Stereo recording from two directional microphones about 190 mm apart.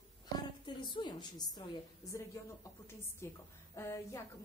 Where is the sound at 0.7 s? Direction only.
25° left (ahead or behind).